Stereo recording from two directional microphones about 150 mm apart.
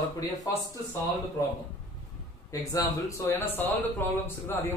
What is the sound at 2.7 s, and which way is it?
A man's voice, 20° left (ahead or behind).